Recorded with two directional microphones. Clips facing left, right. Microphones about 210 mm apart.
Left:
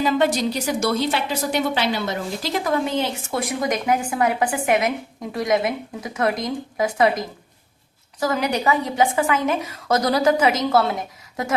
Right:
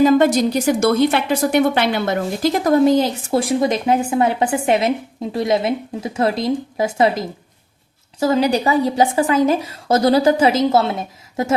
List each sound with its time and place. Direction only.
0.0 s a woman's voice: 45° right (ahead or behind); by 11.5 s 25° right (ahead or behind)